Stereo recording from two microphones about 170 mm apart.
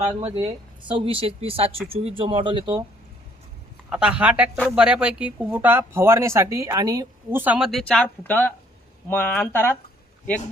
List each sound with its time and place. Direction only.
0.0 s speech: 40° right (ahead or behind)
3.8 s speech: 5° right (ahead or behind); by 9.7 s 10° left (ahead or behind)